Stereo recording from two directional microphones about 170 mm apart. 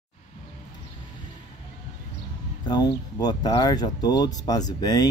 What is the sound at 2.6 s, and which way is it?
Speech, 25° left (ahead or behind).